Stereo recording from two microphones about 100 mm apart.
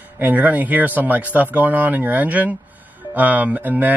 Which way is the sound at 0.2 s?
15° right (ahead or behind).